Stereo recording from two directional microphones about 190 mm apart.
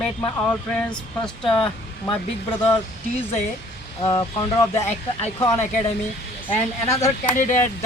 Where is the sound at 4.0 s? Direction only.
20° left (ahead or behind).